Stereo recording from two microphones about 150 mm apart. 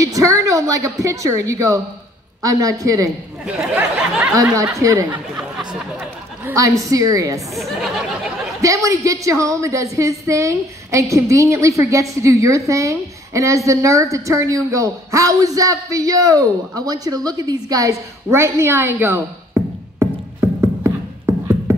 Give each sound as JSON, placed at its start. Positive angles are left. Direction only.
{"t": 0.0, "sound": "a woman's voice", "side_deg": -20}
{"t": 3.4, "sound": "a sound", "side_deg": -10}
{"t": 4.4, "sound": "a woman's voice", "side_deg": -20}
{"t": 6.4, "sound": "a woman's voice", "side_deg": -20}
{"t": 7.5, "sound": "a sound", "side_deg": 0}
{"t": 8.5, "sound": "a woman's voice", "side_deg": -20}